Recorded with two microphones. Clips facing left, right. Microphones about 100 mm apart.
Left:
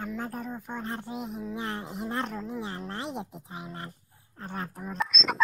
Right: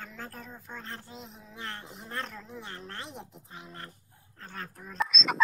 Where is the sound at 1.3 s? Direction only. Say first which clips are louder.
Left 6 dB; 10° left (ahead or behind).